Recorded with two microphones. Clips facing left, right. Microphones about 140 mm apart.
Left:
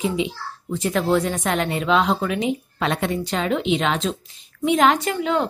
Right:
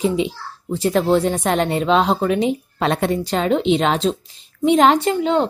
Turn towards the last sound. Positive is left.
turn(degrees=-30)  # may be behind; listen again after turning